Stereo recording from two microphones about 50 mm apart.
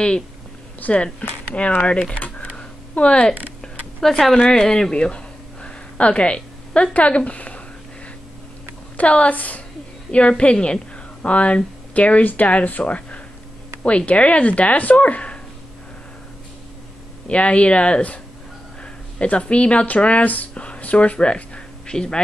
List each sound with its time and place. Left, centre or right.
0.7 s speech: left
1.8 s speech: left
2.1 s typing: left
4.0 s speech: centre; by 7.6 s left
8.9 s a woman's voice: left
17.3 s speech: left